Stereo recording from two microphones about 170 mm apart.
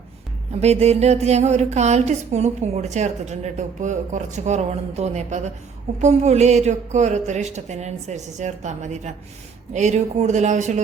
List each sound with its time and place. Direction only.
0.6 s a woman's voice: 40° right (ahead or behind)